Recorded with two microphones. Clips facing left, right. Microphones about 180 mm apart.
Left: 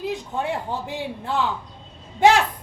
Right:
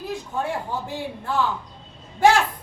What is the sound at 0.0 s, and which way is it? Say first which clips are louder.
A man's voice: left 1 dB; 20° left (ahead or behind).